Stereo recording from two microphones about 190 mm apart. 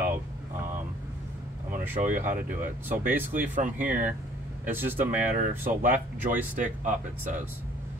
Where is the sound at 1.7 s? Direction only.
45° right (ahead or behind).